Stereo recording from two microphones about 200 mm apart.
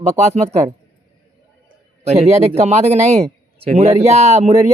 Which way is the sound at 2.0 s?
30° right (ahead or behind).